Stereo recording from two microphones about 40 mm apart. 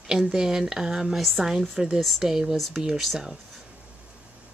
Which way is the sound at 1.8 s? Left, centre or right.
Centre.